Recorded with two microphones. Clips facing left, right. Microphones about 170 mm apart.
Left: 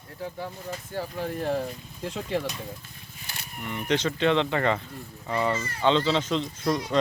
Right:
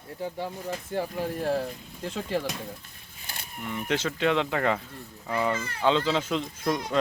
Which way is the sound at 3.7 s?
5° right (ahead or behind).